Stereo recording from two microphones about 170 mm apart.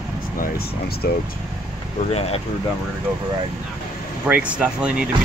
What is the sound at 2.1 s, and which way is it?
Speech, 35° left (ahead or behind).